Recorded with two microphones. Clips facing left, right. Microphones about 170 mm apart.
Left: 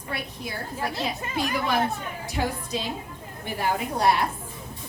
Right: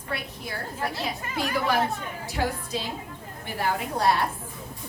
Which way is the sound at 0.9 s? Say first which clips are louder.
Left 2 dB; 20° left (ahead or behind).